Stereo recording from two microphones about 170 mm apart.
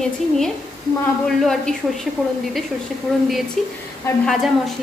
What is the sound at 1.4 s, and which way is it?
Speech, 5° left (ahead or behind).